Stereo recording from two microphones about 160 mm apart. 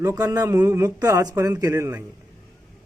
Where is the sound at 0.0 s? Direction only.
20° right (ahead or behind).